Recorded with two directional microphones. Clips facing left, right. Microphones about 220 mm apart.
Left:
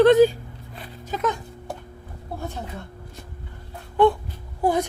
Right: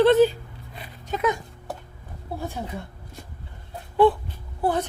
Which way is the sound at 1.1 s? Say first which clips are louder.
Right 1 dB; 5° right (ahead or behind).